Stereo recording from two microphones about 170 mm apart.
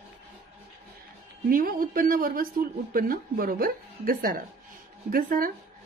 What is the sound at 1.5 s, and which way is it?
A woman's voice, 55° right (ahead or behind).